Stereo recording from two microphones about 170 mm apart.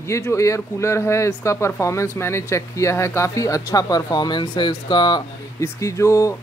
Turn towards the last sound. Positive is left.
turn(degrees=20)  # may be behind; listen again after turning